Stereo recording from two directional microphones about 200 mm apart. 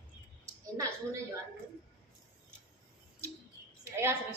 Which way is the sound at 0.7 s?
15° right (ahead or behind).